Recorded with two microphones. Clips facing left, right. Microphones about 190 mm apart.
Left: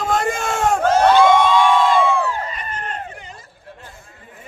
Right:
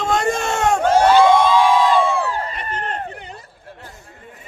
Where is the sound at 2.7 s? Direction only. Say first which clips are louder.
Right 3 dB; 35° right (ahead or behind).